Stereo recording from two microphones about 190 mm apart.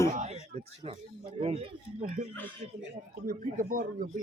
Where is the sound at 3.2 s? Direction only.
45° right (ahead or behind).